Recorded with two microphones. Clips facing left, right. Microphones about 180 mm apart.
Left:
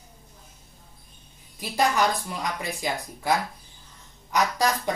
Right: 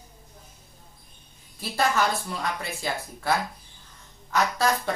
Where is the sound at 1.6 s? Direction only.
15° left (ahead or behind).